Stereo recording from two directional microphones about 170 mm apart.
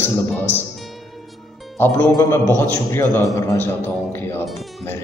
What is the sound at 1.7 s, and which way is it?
A man's voice, 15° left (ahead or behind).